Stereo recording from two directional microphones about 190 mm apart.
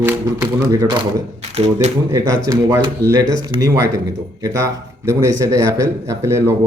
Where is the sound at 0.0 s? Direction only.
15° right (ahead or behind).